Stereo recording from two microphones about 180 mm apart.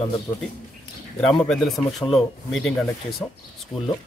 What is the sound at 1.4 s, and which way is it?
Speech, 5° left (ahead or behind).